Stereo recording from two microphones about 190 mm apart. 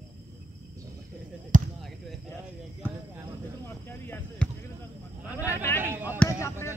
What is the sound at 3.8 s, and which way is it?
Basketball bounce, 10° left (ahead or behind).